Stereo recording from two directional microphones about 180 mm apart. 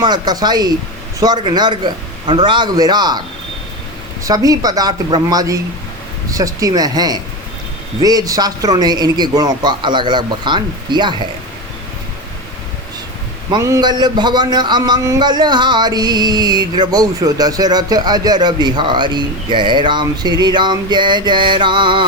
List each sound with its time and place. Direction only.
0.0 s a man's voice: 25° right (ahead or behind)
4.2 s a man's voice: 20° right (ahead or behind)
13.5 s a man's voice: 15° right (ahead or behind)